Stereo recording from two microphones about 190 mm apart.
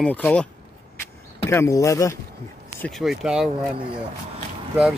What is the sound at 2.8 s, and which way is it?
Speech, centre (ahead or behind).